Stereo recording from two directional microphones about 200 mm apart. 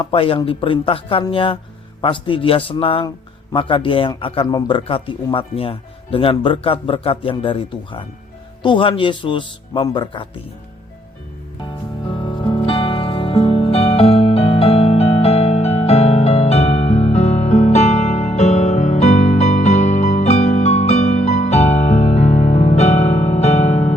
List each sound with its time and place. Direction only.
0.0 s speech: 25° left (ahead or behind)
11.6 s music: 25° left (ahead or behind)